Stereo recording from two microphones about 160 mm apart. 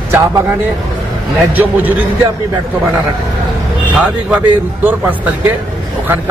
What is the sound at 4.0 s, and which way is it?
A man's voice, 5° right (ahead or behind).